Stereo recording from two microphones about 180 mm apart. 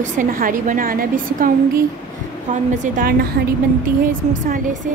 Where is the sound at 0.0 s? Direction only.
50° right (ahead or behind).